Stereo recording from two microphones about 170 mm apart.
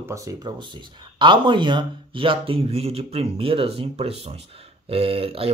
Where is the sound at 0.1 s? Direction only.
20° right (ahead or behind).